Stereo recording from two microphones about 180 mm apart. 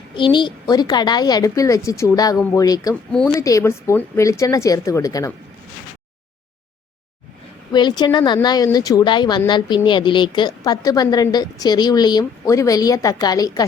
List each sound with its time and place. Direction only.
0.2 s a woman's voice: 25° left (ahead or behind)
3.1 s a woman's voice: 5° left (ahead or behind)
3.3 s speech: 20° left (ahead or behind)
7.7 s a woman's voice: 25° left (ahead or behind)